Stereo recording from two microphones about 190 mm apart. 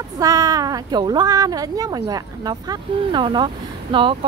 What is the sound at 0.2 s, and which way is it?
Speech, 20° right (ahead or behind).